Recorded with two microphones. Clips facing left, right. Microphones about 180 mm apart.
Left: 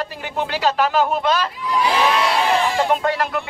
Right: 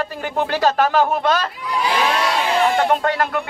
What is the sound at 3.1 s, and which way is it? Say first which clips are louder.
Speech: right 1 dB; 45° right (ahead or behind).